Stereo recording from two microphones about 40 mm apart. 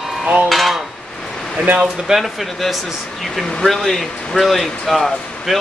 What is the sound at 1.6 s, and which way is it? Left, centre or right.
Speech, right.